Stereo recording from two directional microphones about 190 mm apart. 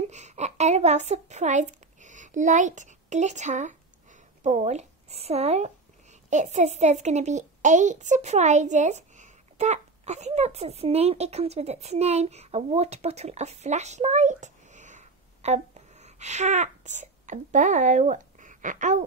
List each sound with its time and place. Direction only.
0.1 s a child's voice: 35° right (ahead or behind)